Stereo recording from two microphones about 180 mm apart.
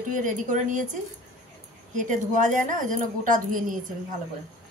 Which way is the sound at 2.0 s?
45° right (ahead or behind).